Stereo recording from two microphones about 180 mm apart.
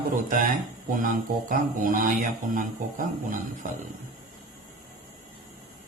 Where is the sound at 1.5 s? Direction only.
50° right (ahead or behind).